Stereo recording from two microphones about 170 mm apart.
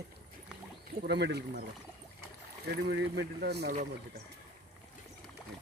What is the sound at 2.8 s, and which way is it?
Speech, 80° right.